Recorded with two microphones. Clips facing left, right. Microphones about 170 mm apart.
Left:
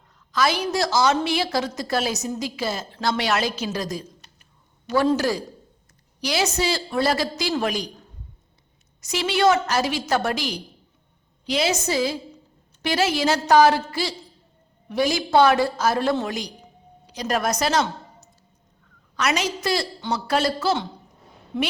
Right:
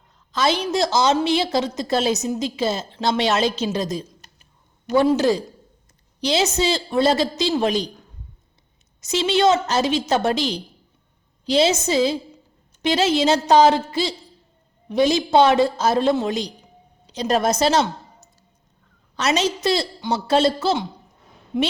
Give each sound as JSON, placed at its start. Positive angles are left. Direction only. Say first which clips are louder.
{"t": 0.3, "sound": "a woman's voice", "louder": "right 2 dB", "side_deg": -25}
{"t": 9.0, "sound": "a woman's voice", "louder": "right 3 dB", "side_deg": -25}
{"t": 21.5, "sound": "a woman's voice", "louder": "right 4 dB", "side_deg": -15}